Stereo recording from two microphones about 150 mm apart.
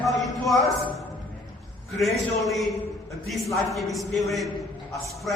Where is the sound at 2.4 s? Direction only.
Centre (ahead or behind).